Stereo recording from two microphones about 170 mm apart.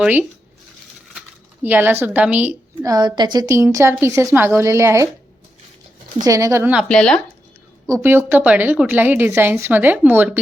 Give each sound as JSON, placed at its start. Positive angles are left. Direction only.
{"t": 0.0, "sound": "a woman's voice", "side_deg": -10}
{"t": 1.6, "sound": "a woman's voice", "side_deg": -10}
{"t": 6.2, "sound": "a woman's voice", "side_deg": -20}
{"t": 6.8, "sound": "speech", "side_deg": 5}
{"t": 7.9, "sound": "a woman's voice", "side_deg": -15}